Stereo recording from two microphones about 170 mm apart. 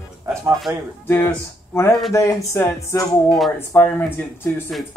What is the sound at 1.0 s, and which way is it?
Speech, 15° left (ahead or behind).